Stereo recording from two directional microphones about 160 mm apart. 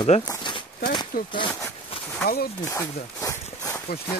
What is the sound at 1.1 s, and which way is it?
Speech, 60° left (ahead or behind).